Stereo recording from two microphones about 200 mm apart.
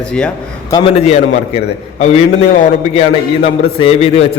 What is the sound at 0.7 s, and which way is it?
A man's voice, 30° left (ahead or behind).